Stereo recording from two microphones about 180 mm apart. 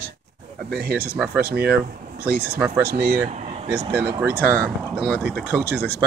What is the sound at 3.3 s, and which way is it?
Air conditioning, 40° right (ahead or behind).